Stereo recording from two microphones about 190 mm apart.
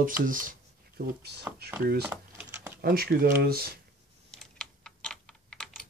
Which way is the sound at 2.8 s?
55° right (ahead or behind).